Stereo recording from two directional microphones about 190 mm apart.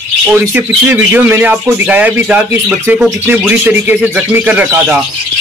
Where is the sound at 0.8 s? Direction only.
10° right (ahead or behind).